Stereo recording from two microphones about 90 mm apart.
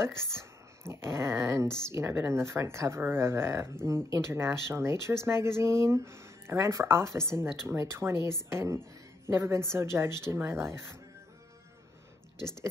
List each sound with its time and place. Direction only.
0.0 s speech: 30° right (ahead or behind)
12.4 s speech: 50° left (ahead or behind)